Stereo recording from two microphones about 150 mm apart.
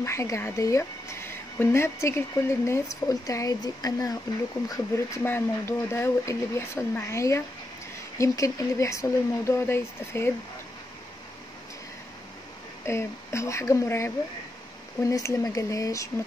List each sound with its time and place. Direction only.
0.0 s speech: 20° left (ahead or behind)
12.8 s speech: 20° left (ahead or behind)